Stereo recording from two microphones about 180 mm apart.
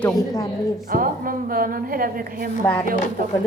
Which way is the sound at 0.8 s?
55° right (ahead or behind).